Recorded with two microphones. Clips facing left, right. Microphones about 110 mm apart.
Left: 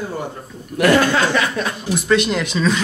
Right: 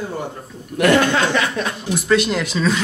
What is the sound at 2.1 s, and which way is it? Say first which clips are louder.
Speech: even; centre (ahead or behind).